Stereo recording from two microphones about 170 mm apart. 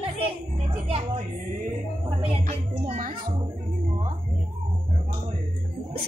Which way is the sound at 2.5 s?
50° right (ahead or behind).